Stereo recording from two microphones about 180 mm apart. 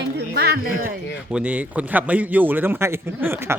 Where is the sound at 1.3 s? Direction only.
5° right (ahead or behind).